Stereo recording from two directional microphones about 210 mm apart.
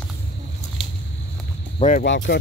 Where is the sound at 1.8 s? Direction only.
40° left (ahead or behind).